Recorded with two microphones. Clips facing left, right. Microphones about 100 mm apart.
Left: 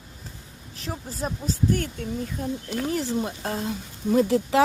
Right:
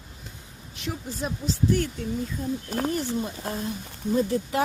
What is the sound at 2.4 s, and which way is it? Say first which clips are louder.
Speech: left 2 dB; 75° left (ahead or behind).